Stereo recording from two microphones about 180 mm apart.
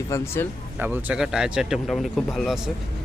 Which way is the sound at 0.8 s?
10° right (ahead or behind).